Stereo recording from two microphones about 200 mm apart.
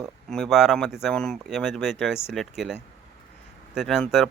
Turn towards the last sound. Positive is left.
turn(degrees=0)  # may be behind; listen again after turning